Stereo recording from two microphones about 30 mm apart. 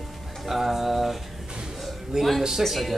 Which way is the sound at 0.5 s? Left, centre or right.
Centre.